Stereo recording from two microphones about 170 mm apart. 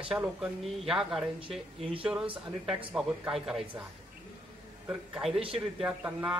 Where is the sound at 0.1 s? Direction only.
5° right (ahead or behind).